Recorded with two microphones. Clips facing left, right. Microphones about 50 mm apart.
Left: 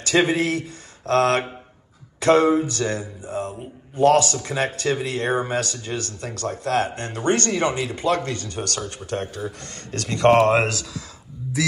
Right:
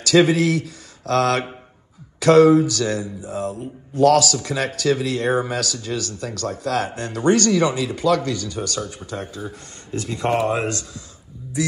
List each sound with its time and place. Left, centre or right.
0.0 s speech: left
9.7 s speech: left